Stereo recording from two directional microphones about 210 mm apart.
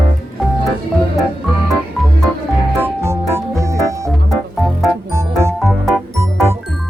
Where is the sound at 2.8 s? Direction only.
10° right (ahead or behind).